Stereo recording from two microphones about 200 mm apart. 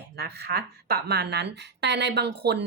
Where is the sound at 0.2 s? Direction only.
55° right (ahead or behind).